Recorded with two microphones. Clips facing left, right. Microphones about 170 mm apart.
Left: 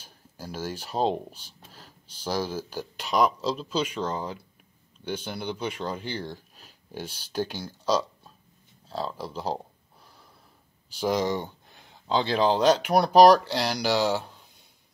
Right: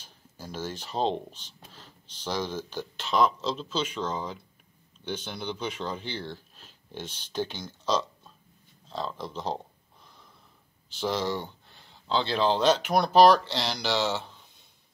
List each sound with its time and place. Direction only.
0.0 s speech: 10° left (ahead or behind)
11.0 s speech: 15° left (ahead or behind)